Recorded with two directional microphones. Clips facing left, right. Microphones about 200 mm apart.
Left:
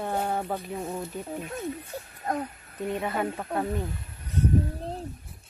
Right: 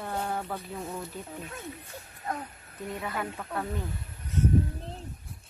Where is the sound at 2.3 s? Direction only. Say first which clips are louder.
Left 5 dB; 40° left (ahead or behind).